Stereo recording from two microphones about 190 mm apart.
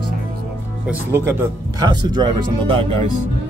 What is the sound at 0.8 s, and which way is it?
Speech, 15° right (ahead or behind).